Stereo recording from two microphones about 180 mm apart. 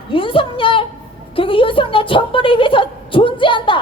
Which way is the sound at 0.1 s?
30° left (ahead or behind).